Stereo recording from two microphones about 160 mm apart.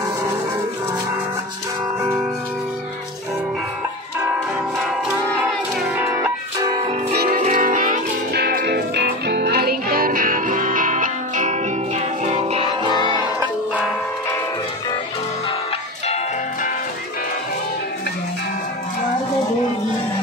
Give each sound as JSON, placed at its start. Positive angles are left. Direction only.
{"t": 5.9, "sound": "music", "side_deg": -10}
{"t": 7.2, "sound": "music", "side_deg": -55}
{"t": 8.3, "sound": "music", "side_deg": -85}
{"t": 12.3, "sound": "music", "side_deg": -40}